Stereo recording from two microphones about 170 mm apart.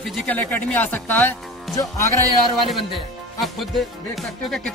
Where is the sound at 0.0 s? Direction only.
5° left (ahead or behind).